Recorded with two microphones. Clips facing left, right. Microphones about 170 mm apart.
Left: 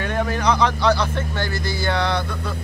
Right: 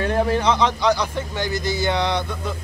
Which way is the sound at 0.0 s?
30° right (ahead or behind).